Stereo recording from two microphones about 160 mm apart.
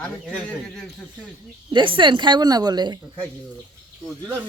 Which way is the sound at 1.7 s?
30° right (ahead or behind).